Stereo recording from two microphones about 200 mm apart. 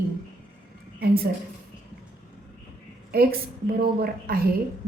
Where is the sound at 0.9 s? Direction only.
50° right (ahead or behind).